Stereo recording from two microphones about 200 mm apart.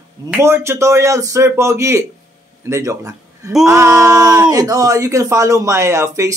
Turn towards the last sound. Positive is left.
turn(degrees=-15)  # may be behind; listen again after turning